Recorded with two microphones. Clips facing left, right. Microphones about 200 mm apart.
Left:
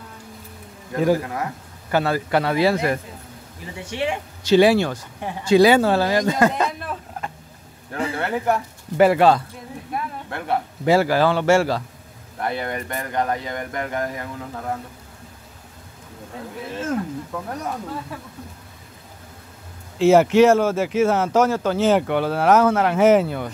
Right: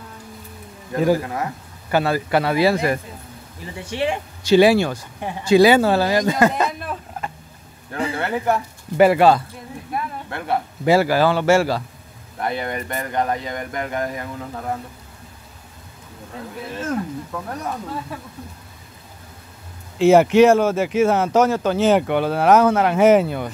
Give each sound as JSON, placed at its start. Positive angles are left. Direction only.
{"t": 1.2, "sound": "a man's voice", "side_deg": -25}
{"t": 1.9, "sound": "speech", "side_deg": -10}
{"t": 3.8, "sound": "speech", "side_deg": -35}
{"t": 4.4, "sound": "speech", "side_deg": -10}
{"t": 6.4, "sound": "a sound", "side_deg": -5}
{"t": 8.2, "sound": "speech", "side_deg": 0}
{"t": 20.0, "sound": "speech", "side_deg": -15}